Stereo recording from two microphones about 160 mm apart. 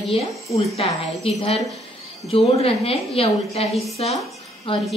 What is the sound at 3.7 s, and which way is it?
Speech, centre (ahead or behind).